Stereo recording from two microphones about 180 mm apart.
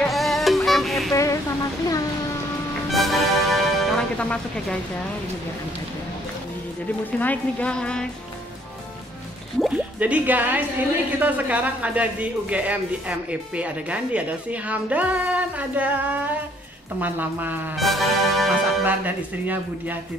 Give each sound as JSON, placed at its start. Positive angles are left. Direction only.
{"t": 0.0, "sound": "music", "side_deg": 0}
{"t": 1.1, "sound": "a sound", "side_deg": 15}
{"t": 2.9, "sound": "music", "side_deg": 0}
{"t": 7.1, "sound": "speech", "side_deg": 10}
{"t": 9.6, "sound": "a man's voice", "side_deg": -5}
{"t": 17.7, "sound": "speech", "side_deg": 0}